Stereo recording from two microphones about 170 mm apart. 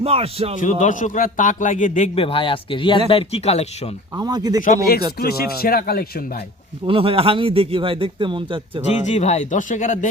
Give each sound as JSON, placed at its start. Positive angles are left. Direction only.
{"t": 0.0, "sound": "speech", "side_deg": -35}
{"t": 0.6, "sound": "a man's voice", "side_deg": 50}
{"t": 2.1, "sound": "speech", "side_deg": 30}
{"t": 4.2, "sound": "speech", "side_deg": -25}
{"t": 4.6, "sound": "speech", "side_deg": 55}
{"t": 6.8, "sound": "speech", "side_deg": -30}
{"t": 9.0, "sound": "a man's voice", "side_deg": 40}